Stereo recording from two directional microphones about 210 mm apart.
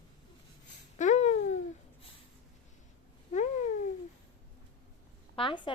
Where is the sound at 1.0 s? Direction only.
35° left (ahead or behind).